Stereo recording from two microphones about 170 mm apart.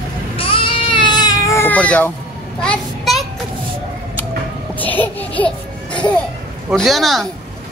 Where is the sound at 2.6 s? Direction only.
Centre (ahead or behind).